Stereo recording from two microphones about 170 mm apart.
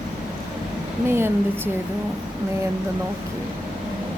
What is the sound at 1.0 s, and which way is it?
Speech, 15° right (ahead or behind).